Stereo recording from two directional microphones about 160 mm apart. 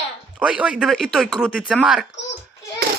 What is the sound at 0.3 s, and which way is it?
Speech, 5° right (ahead or behind).